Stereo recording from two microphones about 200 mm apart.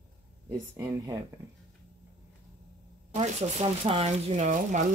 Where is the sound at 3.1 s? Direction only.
30° right (ahead or behind).